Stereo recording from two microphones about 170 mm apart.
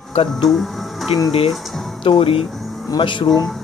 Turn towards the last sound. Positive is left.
turn(degrees=30)  # may be behind; listen again after turning